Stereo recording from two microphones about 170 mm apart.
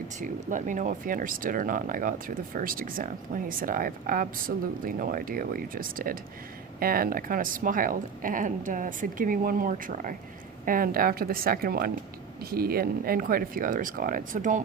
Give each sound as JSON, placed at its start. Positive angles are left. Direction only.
{"t": 0.2, "sound": "speech", "side_deg": -45}